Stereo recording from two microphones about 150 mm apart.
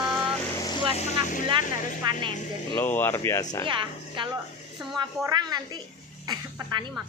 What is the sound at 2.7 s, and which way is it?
Speech, 15° left (ahead or behind).